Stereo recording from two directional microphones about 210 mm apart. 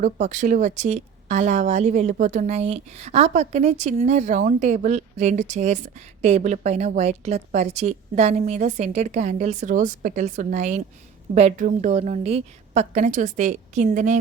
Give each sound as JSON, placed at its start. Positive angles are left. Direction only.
{"t": 0.0, "sound": "speech", "side_deg": -35}